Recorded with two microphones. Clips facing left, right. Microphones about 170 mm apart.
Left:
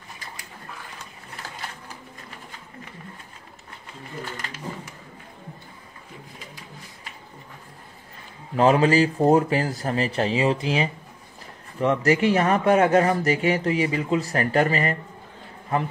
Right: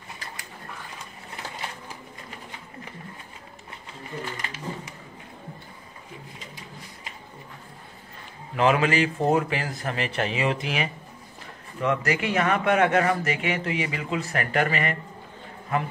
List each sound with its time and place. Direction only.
8.5 s speech: 35° left (ahead or behind)